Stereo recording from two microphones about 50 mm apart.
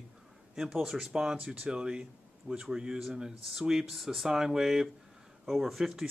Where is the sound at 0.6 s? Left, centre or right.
Centre.